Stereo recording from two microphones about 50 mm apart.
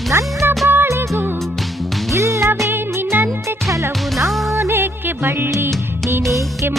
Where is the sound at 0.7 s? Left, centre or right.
Right.